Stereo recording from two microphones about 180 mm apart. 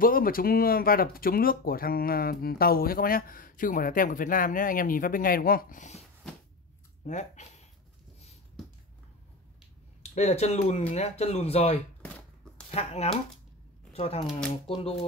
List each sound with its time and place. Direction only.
0.0 s speech: 50° left (ahead or behind)
7.1 s speech: 40° left (ahead or behind)
10.1 s speech: 35° left (ahead or behind)